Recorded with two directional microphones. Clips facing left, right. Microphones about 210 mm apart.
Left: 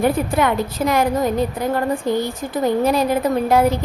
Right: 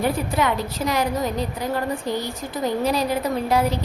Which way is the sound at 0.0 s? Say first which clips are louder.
Left 4 dB; 50° left (ahead or behind).